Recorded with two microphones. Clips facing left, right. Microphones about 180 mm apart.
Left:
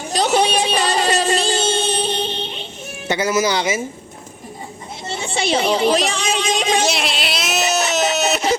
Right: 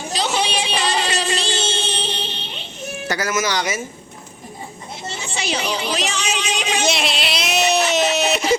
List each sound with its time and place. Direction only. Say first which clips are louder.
0.6 s music: left 4 dB; 45° left (ahead or behind)
2.0 s a sound: left 6 dB; 50° left (ahead or behind)
3.1 s speech: left 4 dB; 25° left (ahead or behind)
5.1 s a child's voice: left 7 dB; 30° left (ahead or behind)
6.8 s baby cry: even; centre (ahead or behind)